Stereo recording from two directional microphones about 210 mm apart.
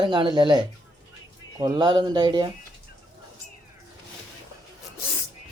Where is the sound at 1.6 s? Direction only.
20° right (ahead or behind).